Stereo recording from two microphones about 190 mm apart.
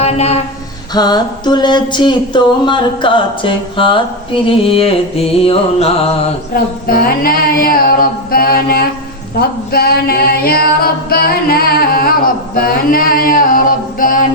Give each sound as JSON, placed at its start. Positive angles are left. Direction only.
{"t": 0.0, "sound": "a man's voice", "side_deg": 35}
{"t": 0.9, "sound": "a sound", "side_deg": 20}
{"t": 4.4, "sound": "music", "side_deg": 30}
{"t": 6.5, "sound": "a capella", "side_deg": 50}